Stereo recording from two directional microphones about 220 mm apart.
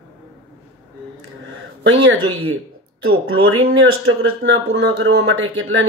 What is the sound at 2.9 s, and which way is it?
Speech, 75° right (ahead or behind).